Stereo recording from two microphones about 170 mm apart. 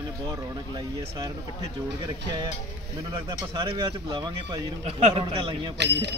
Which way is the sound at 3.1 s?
25° right (ahead or behind).